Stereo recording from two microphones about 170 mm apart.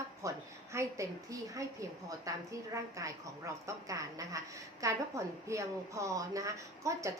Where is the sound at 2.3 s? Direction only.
20° right (ahead or behind).